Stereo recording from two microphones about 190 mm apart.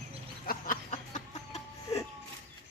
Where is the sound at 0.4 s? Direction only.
45° left (ahead or behind).